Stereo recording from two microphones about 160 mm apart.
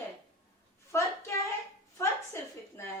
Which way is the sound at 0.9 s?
15° left (ahead or behind).